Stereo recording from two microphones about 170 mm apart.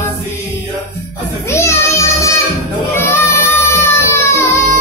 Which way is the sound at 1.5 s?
15° left (ahead or behind).